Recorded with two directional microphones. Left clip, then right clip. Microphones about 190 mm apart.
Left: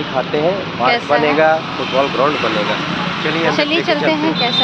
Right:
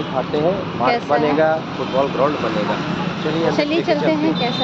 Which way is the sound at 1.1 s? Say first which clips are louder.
Left 4 dB; 15° left (ahead or behind).